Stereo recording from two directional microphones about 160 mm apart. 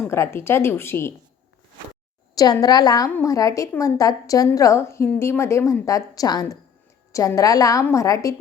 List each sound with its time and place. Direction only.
0.0 s a woman's voice: 15° left (ahead or behind)
2.3 s a woman's voice: 25° left (ahead or behind)
3.1 s a woman's voice: 10° left (ahead or behind)